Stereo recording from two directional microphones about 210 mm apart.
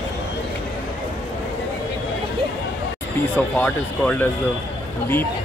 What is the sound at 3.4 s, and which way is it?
Speech, 10° left (ahead or behind).